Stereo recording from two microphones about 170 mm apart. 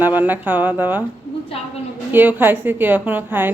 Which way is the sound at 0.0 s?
10° right (ahead or behind).